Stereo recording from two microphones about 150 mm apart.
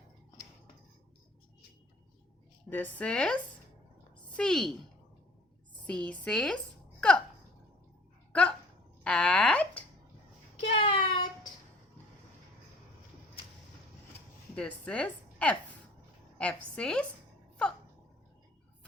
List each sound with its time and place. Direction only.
2.6 s speech: 10° left (ahead or behind)
4.4 s speech: 5° left (ahead or behind)
5.8 s speech: 10° left (ahead or behind)
8.3 s a sound: 10° left (ahead or behind)
10.7 s child singing: 40° left (ahead or behind)
14.5 s a woman's voice: 5° left (ahead or behind)